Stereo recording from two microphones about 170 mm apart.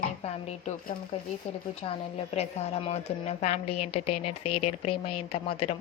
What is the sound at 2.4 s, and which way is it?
A woman's voice, 40° left (ahead or behind).